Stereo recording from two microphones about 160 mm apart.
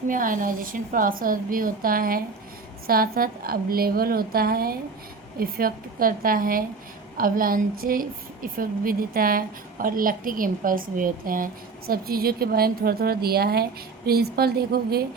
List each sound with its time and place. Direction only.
0.1 s a woman's voice: 55° right (ahead or behind); by 15.0 s 75° right (ahead or behind)